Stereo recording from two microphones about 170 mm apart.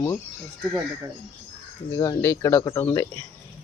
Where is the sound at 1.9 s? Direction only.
20° left (ahead or behind).